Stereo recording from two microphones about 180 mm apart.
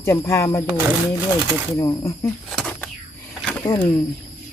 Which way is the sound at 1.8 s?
15° left (ahead or behind).